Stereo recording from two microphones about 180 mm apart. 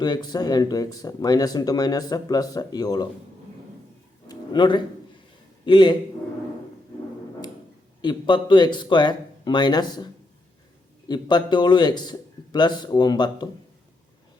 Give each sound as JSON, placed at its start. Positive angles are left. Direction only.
{"t": 0.0, "sound": "speech", "side_deg": 25}
{"t": 4.3, "sound": "music", "side_deg": 25}
{"t": 5.6, "sound": "speech", "side_deg": 25}
{"t": 8.0, "sound": "speech", "side_deg": 25}
{"t": 11.1, "sound": "speech", "side_deg": 25}